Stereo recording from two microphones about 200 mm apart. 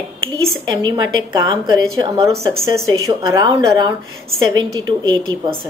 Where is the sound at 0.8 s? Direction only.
20° right (ahead or behind).